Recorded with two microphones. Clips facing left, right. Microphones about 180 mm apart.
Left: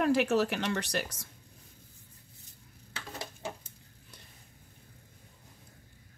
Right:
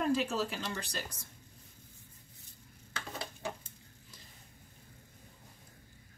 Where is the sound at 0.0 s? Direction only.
75° left (ahead or behind).